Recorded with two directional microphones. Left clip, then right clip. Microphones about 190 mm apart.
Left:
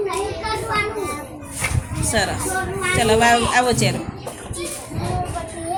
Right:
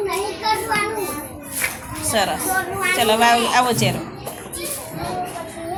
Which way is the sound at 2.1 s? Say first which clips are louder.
Right 2 dB; centre (ahead or behind).